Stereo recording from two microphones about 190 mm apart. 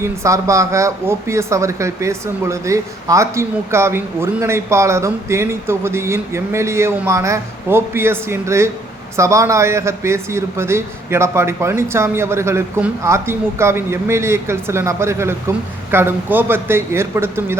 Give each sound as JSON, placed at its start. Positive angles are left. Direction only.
{"t": 0.0, "sound": "speech", "side_deg": -15}